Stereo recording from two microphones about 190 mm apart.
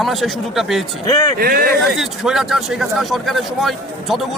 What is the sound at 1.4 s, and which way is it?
Speech, 50° right (ahead or behind).